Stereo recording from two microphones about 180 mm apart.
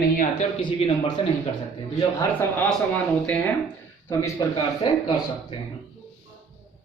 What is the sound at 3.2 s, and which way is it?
Speech, 5° left (ahead or behind).